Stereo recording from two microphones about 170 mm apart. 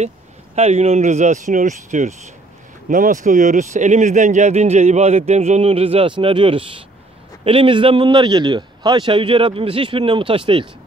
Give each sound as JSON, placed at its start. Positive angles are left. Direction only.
{"t": 0.6, "sound": "a man's voice", "side_deg": -40}